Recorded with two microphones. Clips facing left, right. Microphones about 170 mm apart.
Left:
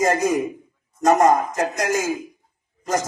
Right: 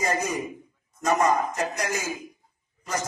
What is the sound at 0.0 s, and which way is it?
A man's voice, 45° left (ahead or behind).